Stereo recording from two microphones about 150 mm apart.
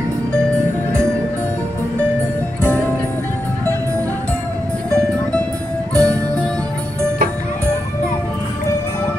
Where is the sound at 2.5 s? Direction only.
15° left (ahead or behind).